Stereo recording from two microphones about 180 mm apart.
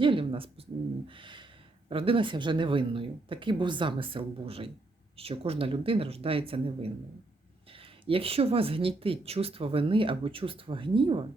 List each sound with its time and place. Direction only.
0.0 s a sound: 30° right (ahead or behind)
1.9 s speech: 30° right (ahead or behind)
8.0 s speech: 30° right (ahead or behind)